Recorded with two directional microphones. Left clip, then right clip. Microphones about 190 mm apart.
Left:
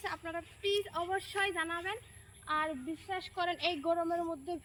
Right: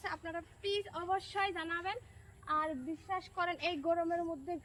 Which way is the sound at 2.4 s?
5° right (ahead or behind).